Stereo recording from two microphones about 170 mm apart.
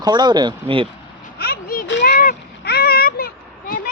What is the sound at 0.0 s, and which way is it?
Speech, 25° right (ahead or behind).